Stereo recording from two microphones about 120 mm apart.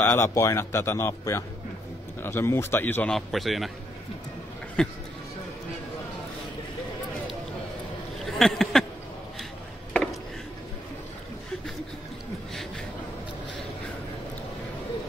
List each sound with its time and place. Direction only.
0.0 s a man's voice: 20° left (ahead or behind)
3.2 s a man's voice: centre (ahead or behind)
4.8 s speech: 5° left (ahead or behind)
8.3 s a sound: 5° left (ahead or behind)